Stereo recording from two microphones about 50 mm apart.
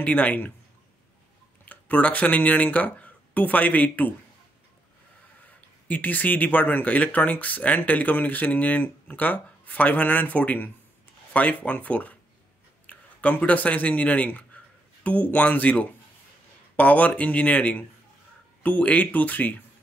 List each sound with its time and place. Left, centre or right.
0.0 s speech: left
1.7 s speech: left
5.4 s speech: left